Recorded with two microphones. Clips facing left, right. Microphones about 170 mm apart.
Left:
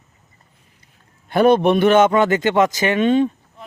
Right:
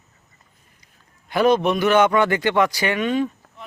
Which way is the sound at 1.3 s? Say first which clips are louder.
Left 4 dB; 55° left (ahead or behind).